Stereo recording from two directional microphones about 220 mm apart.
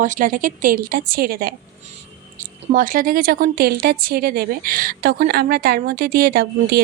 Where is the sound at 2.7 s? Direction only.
40° right (ahead or behind).